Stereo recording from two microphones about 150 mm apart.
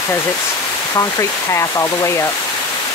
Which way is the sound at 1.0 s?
20° left (ahead or behind).